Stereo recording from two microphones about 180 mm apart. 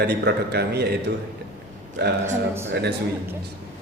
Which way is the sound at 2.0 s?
65° right (ahead or behind).